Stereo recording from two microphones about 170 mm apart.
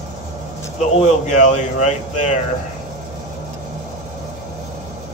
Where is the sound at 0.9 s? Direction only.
40° left (ahead or behind).